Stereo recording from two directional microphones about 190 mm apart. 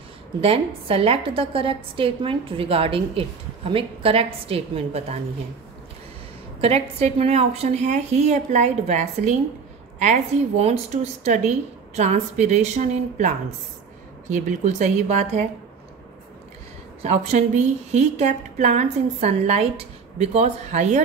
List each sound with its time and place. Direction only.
0.4 s a woman's voice: 30° right (ahead or behind)
6.6 s a woman's voice: 35° right (ahead or behind)
17.0 s a woman's voice: 35° right (ahead or behind)